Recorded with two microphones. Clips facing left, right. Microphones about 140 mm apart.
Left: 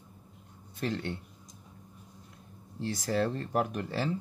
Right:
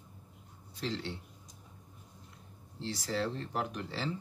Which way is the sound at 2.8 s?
50° left (ahead or behind).